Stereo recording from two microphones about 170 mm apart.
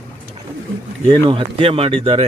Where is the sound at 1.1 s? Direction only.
30° right (ahead or behind).